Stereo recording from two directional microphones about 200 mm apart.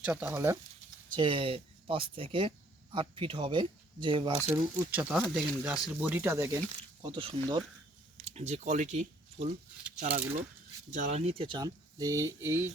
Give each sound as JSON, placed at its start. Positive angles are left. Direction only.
{"t": 0.0, "sound": "speech", "side_deg": -5}
{"t": 1.1, "sound": "speech", "side_deg": -25}
{"t": 4.4, "sound": "speech", "side_deg": -10}
{"t": 7.0, "sound": "speech", "side_deg": -25}